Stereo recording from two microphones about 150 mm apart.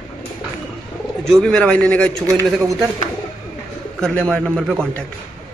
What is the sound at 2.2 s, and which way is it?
Speech, 20° right (ahead or behind).